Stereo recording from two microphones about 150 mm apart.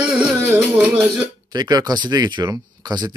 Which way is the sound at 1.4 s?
25° right (ahead or behind).